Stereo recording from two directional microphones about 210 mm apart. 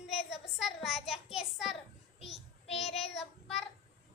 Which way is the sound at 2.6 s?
30° left (ahead or behind).